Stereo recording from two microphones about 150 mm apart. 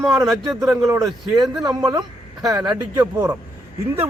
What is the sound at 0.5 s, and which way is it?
A man's voice, 25° right (ahead or behind).